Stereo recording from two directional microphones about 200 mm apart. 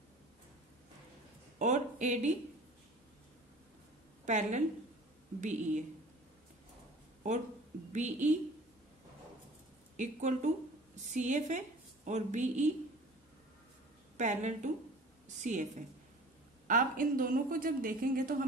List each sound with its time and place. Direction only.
1.6 s speech: 35° right (ahead or behind)
4.3 s speech: 35° right (ahead or behind)
7.9 s speech: 35° right (ahead or behind)
9.9 s a woman's voice: 35° right (ahead or behind)
14.1 s a woman's voice: 35° right (ahead or behind)